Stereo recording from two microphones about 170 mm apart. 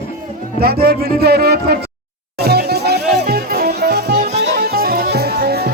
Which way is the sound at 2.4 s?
70° right (ahead or behind).